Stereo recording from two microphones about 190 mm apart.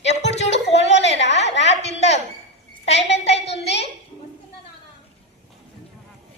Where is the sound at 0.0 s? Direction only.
35° left (ahead or behind).